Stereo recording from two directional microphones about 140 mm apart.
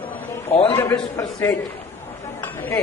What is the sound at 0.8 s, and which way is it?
Speech, 20° left (ahead or behind).